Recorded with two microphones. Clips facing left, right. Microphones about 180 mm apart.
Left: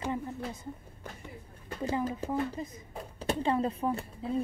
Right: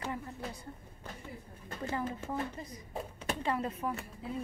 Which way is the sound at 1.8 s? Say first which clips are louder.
Left 5 dB; 15° left (ahead or behind).